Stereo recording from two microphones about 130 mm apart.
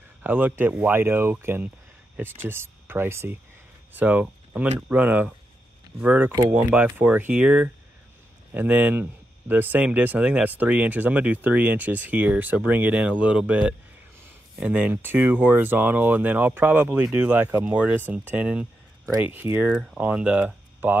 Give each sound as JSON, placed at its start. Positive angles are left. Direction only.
{"t": 0.2, "sound": "speech", "side_deg": -15}